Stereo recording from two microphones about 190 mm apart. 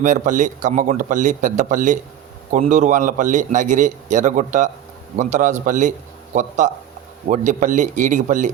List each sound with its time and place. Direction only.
0.0 s a man's voice: 40° right (ahead or behind)
7.3 s a man's voice: 40° right (ahead or behind)